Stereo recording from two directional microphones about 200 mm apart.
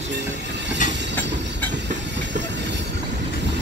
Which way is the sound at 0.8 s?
40° left (ahead or behind).